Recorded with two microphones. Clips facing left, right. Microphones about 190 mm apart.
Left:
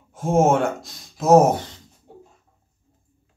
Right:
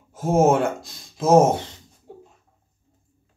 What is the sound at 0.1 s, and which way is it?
Speech, 5° right (ahead or behind).